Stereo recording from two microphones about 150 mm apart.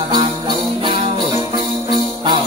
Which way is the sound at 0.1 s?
30° right (ahead or behind).